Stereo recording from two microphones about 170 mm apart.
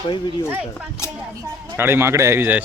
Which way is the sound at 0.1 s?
30° left (ahead or behind).